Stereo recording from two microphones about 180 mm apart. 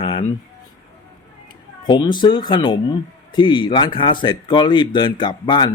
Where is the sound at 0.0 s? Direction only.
30° left (ahead or behind).